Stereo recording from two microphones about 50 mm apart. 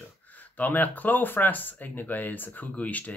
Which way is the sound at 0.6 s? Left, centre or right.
Left.